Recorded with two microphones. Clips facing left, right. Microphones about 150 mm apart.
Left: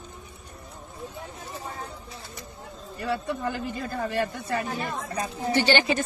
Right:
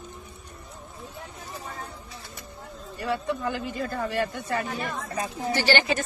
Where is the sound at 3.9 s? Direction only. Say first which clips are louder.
Left 1 dB; 35° left (ahead or behind).